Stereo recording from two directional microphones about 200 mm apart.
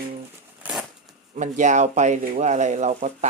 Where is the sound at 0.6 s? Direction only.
5° right (ahead or behind).